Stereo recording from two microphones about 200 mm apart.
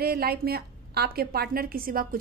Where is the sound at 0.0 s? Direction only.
50° right (ahead or behind).